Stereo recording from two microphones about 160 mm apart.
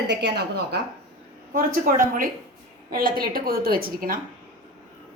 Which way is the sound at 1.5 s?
60° right (ahead or behind).